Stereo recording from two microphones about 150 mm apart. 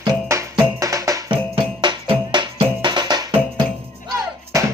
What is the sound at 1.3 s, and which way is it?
Music, 30° right (ahead or behind).